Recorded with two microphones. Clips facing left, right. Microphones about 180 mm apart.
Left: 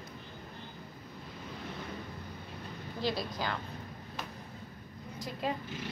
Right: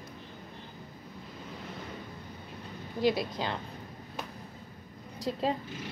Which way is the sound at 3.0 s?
20° right (ahead or behind).